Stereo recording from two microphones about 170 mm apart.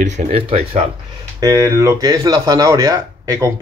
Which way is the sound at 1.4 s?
15° right (ahead or behind).